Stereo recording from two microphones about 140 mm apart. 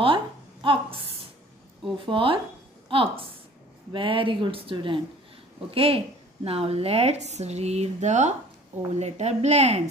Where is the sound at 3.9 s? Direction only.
40° right (ahead or behind).